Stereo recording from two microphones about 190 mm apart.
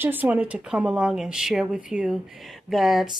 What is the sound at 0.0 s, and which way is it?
Speech, 10° right (ahead or behind).